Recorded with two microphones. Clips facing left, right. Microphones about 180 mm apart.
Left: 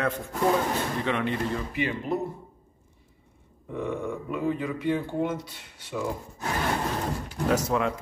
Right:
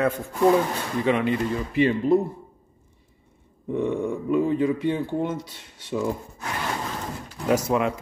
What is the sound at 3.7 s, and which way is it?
Grunt, 30° right (ahead or behind).